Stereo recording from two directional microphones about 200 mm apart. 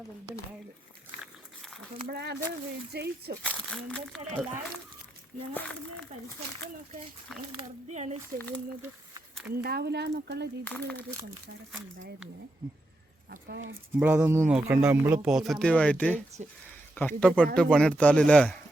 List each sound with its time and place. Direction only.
2.0 s speech: 55° right (ahead or behind)
3.4 s speech: 5° left (ahead or behind)
5.5 s speech: 5° left (ahead or behind)
7.3 s speech: centre (ahead or behind)
7.9 s speech: 35° right (ahead or behind)
8.4 s speech: 10° left (ahead or behind)
8.8 s a sound: 10° right (ahead or behind)
9.6 s speech: 55° right (ahead or behind)
10.6 s speech: 5° left (ahead or behind)
13.5 s speech: 70° right (ahead or behind)
14.0 s speech: 10° right (ahead or behind)